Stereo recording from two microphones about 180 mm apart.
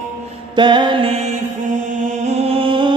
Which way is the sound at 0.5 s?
25° right (ahead or behind).